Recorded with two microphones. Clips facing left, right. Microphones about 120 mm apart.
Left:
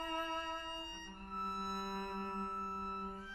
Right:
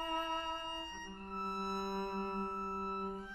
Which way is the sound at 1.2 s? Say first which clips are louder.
Right 2 dB; 25° right (ahead or behind).